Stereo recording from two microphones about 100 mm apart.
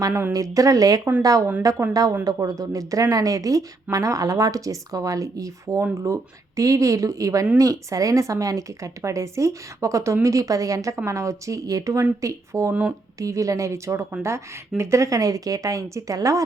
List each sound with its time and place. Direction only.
0.0 s speech: 30° right (ahead or behind)